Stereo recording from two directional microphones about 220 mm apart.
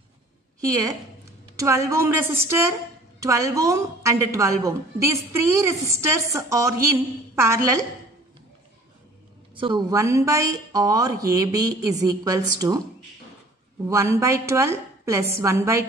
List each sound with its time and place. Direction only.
0.6 s a woman's voice: 15° right (ahead or behind)
9.6 s a woman's voice: 20° right (ahead or behind)
13.8 s a woman's voice: 15° right (ahead or behind)